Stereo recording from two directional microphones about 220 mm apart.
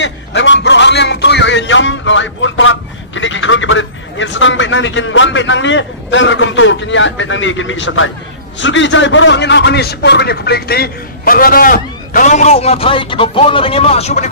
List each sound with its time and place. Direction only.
0.0 s a man's voice: 55° left (ahead or behind); by 14.3 s 30° left (ahead or behind)